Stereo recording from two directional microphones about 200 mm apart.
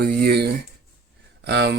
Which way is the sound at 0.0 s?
50° right (ahead or behind).